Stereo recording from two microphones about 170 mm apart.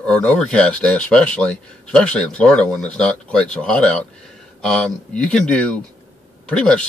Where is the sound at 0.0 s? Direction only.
10° left (ahead or behind).